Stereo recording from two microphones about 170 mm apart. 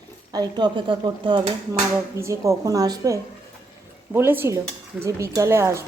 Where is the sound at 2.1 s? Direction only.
15° right (ahead or behind).